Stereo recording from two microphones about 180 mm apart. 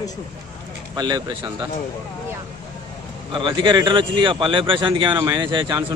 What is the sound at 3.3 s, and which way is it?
Speech, 25° right (ahead or behind).